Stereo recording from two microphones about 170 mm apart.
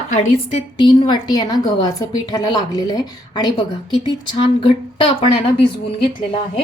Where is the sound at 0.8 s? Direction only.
30° left (ahead or behind).